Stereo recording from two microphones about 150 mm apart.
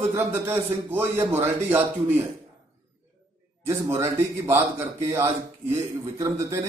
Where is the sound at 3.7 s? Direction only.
20° right (ahead or behind).